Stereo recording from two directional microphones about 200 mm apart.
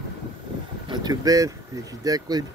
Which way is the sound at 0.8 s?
20° right (ahead or behind).